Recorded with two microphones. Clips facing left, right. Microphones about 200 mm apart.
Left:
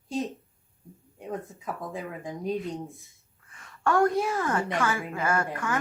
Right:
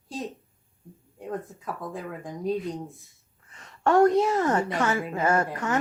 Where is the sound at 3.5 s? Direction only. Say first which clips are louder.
Right 4 dB; 20° right (ahead or behind).